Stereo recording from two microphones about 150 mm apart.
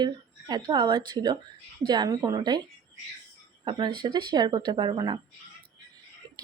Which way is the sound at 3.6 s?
30° right (ahead or behind).